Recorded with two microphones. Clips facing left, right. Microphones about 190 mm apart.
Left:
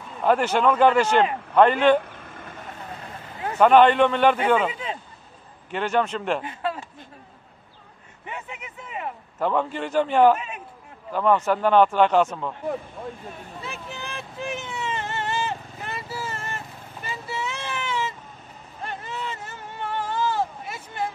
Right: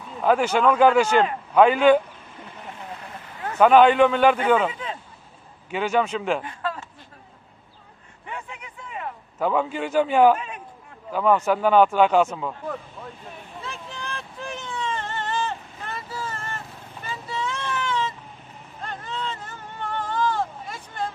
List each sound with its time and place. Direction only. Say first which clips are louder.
0.2 s speech: right 1 dB; centre (ahead or behind)
3.5 s speech: right 1 dB; 5° right (ahead or behind)
5.7 s speech: right 1 dB; 5° right (ahead or behind)
6.6 s a sound: left 2 dB; 25° left (ahead or behind)
8.3 s a sound: even; 20° left (ahead or behind)
9.4 s speech: right 1 dB; 5° right (ahead or behind)
10.3 s speech: even; 10° left (ahead or behind)
11.1 s speech: right 1 dB; 5° right (ahead or behind)
13.6 s vehicle: even; 5° left (ahead or behind)
18.8 s a sound: even; 10° left (ahead or behind)